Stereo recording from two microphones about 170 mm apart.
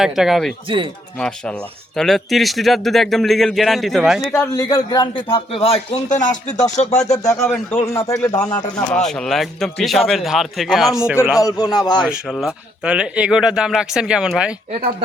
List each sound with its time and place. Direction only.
0.0 s speech: centre (ahead or behind)
2.0 s speech: centre (ahead or behind)
4.4 s a man's voice: 20° left (ahead or behind); by 7.0 s 45° left (ahead or behind)
7.1 s speech: 15° left (ahead or behind)
9.0 s speech: centre (ahead or behind)
11.3 s speech: 20° left (ahead or behind)
12.0 s speech: centre (ahead or behind)